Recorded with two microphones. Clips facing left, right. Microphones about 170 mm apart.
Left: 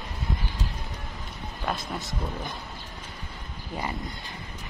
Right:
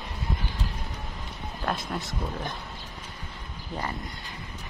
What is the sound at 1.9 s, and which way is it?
Speech, centre (ahead or behind).